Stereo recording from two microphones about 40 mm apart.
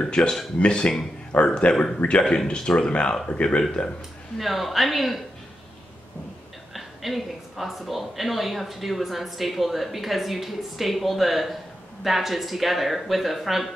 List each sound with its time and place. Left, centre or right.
0.0 s speech: left
4.4 s a woman's voice: centre
6.7 s a woman's voice: centre